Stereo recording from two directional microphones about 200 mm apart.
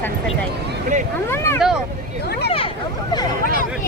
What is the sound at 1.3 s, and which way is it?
Speech, 15° left (ahead or behind).